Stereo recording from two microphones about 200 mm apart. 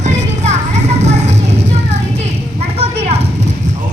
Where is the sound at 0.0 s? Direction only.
35° right (ahead or behind).